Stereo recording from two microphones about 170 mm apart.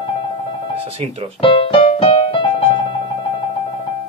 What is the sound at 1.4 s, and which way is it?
Music, 30° left (ahead or behind).